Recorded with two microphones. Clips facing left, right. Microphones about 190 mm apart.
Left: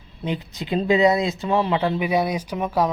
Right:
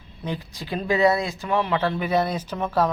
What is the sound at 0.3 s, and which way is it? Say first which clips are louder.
Speech: left 4 dB; 20° left (ahead or behind).